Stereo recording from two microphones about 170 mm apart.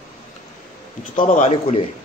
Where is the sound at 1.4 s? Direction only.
40° left (ahead or behind).